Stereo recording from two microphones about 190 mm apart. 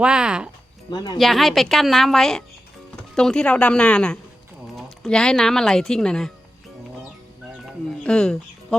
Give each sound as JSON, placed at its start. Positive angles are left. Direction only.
{"t": 0.0, "sound": "speech", "side_deg": -5}
{"t": 0.9, "sound": "speech", "side_deg": 20}
{"t": 1.2, "sound": "speech", "side_deg": 0}
{"t": 8.0, "sound": "speech", "side_deg": 5}